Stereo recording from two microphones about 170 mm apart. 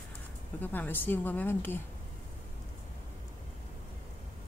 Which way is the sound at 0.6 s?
10° left (ahead or behind).